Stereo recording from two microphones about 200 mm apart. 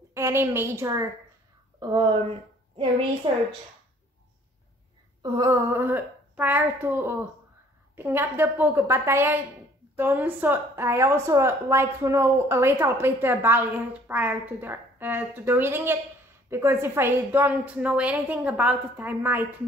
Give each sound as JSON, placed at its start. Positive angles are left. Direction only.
{"t": 0.1, "sound": "a woman's voice", "side_deg": -15}
{"t": 3.3, "sound": "speech", "side_deg": -25}
{"t": 5.2, "sound": "a woman's voice", "side_deg": -20}